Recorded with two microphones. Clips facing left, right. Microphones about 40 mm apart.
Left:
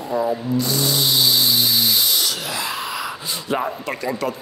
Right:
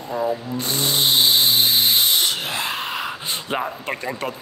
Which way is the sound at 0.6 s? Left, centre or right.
Right.